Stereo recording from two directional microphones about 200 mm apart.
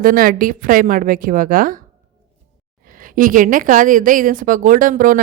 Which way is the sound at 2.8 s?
45° right (ahead or behind).